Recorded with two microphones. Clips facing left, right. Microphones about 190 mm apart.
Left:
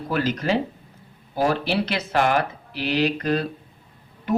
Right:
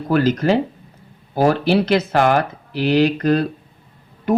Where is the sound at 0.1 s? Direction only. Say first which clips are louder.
Right 7 dB; 45° right (ahead or behind).